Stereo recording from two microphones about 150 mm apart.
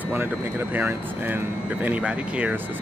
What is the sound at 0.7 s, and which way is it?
Speech, 10° right (ahead or behind).